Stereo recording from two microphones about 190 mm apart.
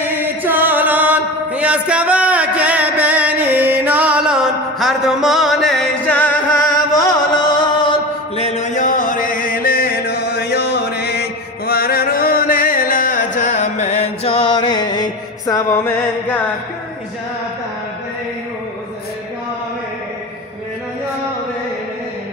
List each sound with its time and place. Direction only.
0.1 s chant: 10° right (ahead or behind); by 6.3 s 10° left (ahead or behind)
7.0 s chant: 20° left (ahead or behind)